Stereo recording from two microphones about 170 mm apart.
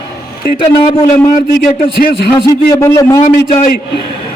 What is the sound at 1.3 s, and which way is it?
Speech, 60° left (ahead or behind).